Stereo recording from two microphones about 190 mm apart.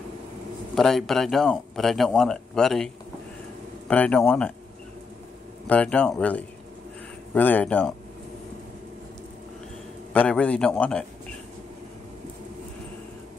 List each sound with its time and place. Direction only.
0.7 s speech: centre (ahead or behind)
5.7 s speech: 5° left (ahead or behind)
10.1 s speech: 5° left (ahead or behind)